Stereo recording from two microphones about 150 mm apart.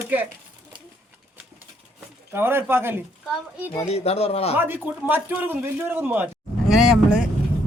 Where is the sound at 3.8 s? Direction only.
45° left (ahead or behind).